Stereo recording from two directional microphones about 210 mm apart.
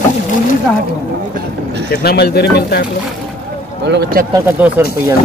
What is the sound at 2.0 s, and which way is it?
Speech, 50° left (ahead or behind).